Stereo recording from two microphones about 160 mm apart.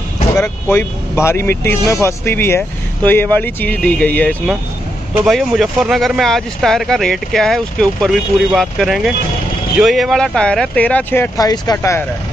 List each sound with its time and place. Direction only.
0.4 s speech: 15° left (ahead or behind)
11.3 s speech: 25° left (ahead or behind)